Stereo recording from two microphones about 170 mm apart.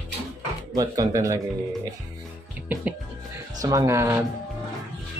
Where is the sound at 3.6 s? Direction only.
15° right (ahead or behind).